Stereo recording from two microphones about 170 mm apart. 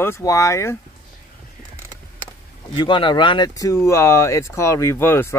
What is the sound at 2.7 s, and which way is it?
Speech, 30° left (ahead or behind).